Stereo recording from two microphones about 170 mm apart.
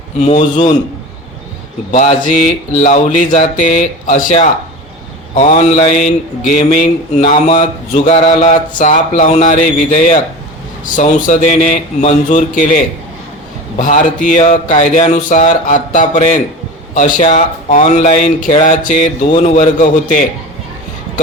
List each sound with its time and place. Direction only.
0.3 s speech: 40° left (ahead or behind)
1.9 s speech: 45° left (ahead or behind)